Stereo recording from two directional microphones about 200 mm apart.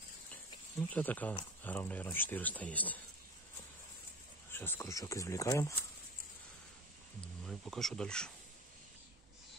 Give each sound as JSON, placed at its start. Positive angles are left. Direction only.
{"t": 0.9, "sound": "speech", "side_deg": 10}
{"t": 4.5, "sound": "speech", "side_deg": 10}
{"t": 7.4, "sound": "speech", "side_deg": 0}